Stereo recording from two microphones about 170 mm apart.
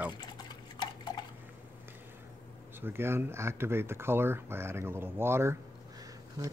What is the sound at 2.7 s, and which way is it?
Speech, 15° right (ahead or behind).